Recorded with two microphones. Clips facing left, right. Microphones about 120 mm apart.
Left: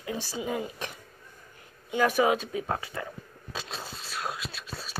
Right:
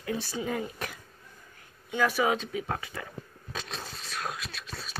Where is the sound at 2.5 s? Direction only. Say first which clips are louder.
Left 2 dB; 35° left (ahead or behind).